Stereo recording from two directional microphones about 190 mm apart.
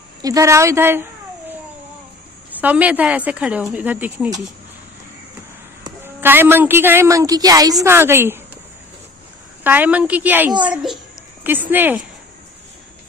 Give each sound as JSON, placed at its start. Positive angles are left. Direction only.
{"t": 0.2, "sound": "a woman's voice", "side_deg": -15}
{"t": 2.6, "sound": "a woman's voice", "side_deg": -10}
{"t": 5.9, "sound": "a woman's voice", "side_deg": -10}
{"t": 9.6, "sound": "a woman's voice", "side_deg": -10}